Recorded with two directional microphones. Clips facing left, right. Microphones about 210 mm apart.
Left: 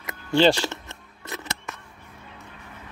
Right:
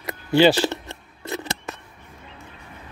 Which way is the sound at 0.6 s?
30° right (ahead or behind).